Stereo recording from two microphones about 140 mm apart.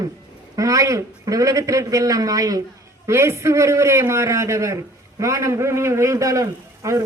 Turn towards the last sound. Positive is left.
turn(degrees=-20)  # may be behind; listen again after turning